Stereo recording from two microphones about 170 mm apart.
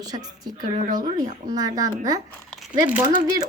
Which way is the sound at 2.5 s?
Centre (ahead or behind).